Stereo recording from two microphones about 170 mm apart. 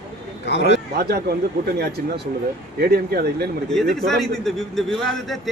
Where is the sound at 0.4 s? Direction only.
90° left.